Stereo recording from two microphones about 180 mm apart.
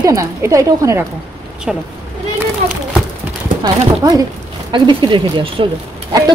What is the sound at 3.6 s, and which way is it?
Speech, 20° right (ahead or behind).